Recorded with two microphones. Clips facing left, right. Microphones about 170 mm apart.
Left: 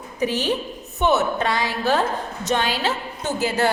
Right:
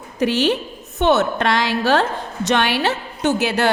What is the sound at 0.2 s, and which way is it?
Speech, 75° right (ahead or behind).